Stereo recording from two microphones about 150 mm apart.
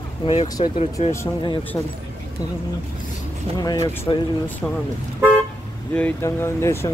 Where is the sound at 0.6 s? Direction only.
45° left (ahead or behind).